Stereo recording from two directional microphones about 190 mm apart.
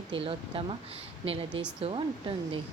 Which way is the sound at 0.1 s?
30° right (ahead or behind).